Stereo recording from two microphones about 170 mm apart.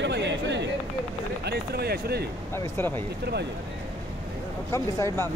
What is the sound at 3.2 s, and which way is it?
Speech, 75° right (ahead or behind).